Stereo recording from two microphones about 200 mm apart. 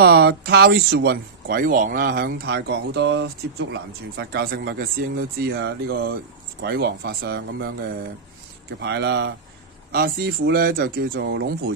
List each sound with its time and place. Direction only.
0.0 s speech: 55° right (ahead or behind)
8.8 s speech: 55° right (ahead or behind)